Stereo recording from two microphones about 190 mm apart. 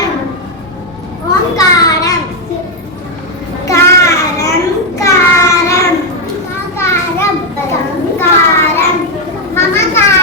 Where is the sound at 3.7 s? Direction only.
15° left (ahead or behind).